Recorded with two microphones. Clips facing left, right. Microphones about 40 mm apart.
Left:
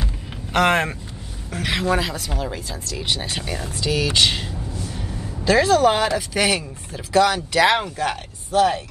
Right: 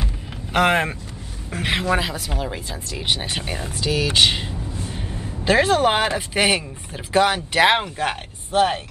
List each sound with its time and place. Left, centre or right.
0.5 s speech: centre
1.5 s speech: right
2.0 s speech: centre
2.8 s speech: right
3.8 s speech: centre
4.7 s speech: right